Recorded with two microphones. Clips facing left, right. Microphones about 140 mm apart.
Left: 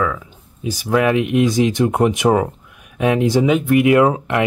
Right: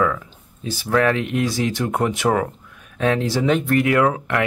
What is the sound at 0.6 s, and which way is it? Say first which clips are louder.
Speech: left 2 dB; 15° left (ahead or behind).